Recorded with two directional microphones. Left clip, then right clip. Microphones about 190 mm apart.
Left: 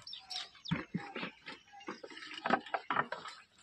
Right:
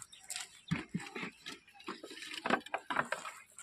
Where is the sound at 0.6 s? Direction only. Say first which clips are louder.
Right 1 dB; 30° right (ahead or behind).